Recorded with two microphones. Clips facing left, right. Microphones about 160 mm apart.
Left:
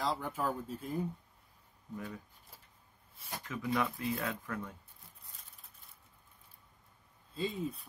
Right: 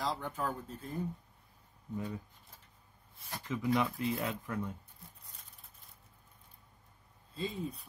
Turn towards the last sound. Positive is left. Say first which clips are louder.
# left 2 dB
turn(degrees=0)  # may be behind; listen again after turning